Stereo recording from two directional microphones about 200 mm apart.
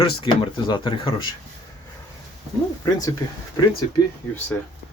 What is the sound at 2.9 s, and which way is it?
Speech, 20° left (ahead or behind).